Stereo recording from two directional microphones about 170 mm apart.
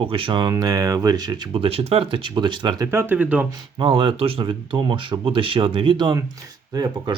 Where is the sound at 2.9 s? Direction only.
10° right (ahead or behind).